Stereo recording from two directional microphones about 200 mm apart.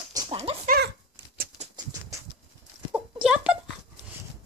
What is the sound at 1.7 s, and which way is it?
Dog, 15° right (ahead or behind).